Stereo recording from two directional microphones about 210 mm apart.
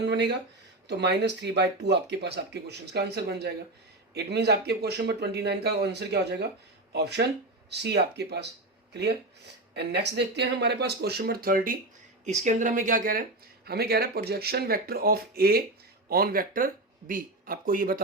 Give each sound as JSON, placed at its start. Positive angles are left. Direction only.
{"t": 0.0, "sound": "speech", "side_deg": -55}